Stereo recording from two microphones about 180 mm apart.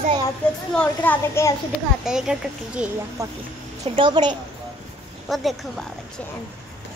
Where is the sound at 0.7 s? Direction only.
10° left (ahead or behind).